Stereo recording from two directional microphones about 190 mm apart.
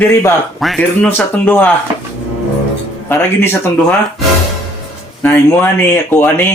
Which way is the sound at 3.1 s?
10° left (ahead or behind).